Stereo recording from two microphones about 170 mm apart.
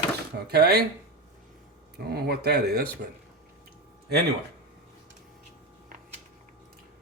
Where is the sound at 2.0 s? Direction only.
65° right (ahead or behind).